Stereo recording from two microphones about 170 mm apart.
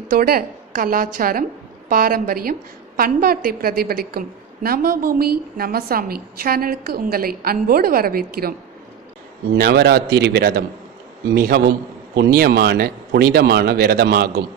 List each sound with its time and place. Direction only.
0.1 s a woman's voice: 60° right (ahead or behind)
9.6 s a woman's voice: 70° right (ahead or behind)